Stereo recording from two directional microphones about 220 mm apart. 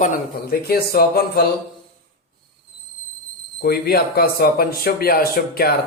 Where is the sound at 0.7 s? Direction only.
45° left (ahead or behind).